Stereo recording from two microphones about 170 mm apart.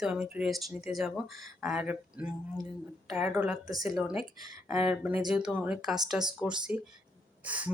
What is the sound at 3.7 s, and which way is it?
Speech, 20° right (ahead or behind).